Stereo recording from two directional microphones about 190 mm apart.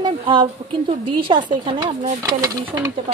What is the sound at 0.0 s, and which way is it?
A woman's voice, 25° right (ahead or behind).